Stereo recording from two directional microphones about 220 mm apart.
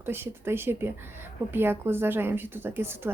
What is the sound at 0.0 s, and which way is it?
A woman's voice, 10° right (ahead or behind).